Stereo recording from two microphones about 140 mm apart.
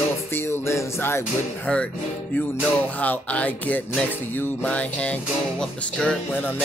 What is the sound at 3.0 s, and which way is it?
Music, 10° left (ahead or behind).